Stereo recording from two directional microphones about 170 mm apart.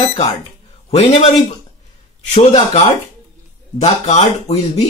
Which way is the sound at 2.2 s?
40° left (ahead or behind).